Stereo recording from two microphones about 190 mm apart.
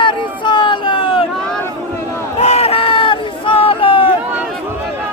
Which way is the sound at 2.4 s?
35° left (ahead or behind).